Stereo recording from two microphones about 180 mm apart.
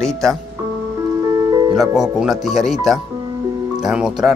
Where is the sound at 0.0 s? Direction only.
Centre (ahead or behind).